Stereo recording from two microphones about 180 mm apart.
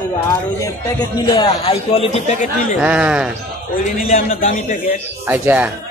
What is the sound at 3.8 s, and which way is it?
A man's voice, 40° left (ahead or behind).